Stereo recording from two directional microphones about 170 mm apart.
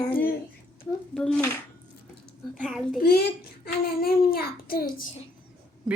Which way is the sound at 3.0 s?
65° left (ahead or behind).